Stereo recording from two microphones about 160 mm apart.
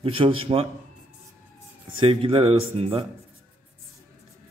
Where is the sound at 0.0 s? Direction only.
35° right (ahead or behind).